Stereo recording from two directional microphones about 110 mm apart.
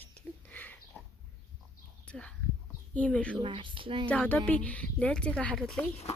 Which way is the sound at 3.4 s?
50° right (ahead or behind).